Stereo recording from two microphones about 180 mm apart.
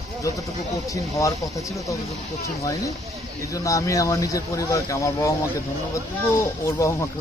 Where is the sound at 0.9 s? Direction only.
20° left (ahead or behind).